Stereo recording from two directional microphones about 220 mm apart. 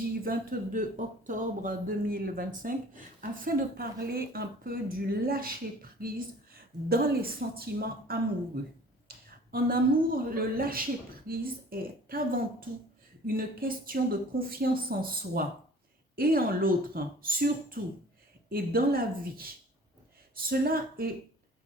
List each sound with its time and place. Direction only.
0.3 s a woman's voice: 35° right (ahead or behind)
9.0 s a sound: 40° right (ahead or behind)
10.2 s speech: 40° right (ahead or behind)
20.5 s speech: 40° right (ahead or behind)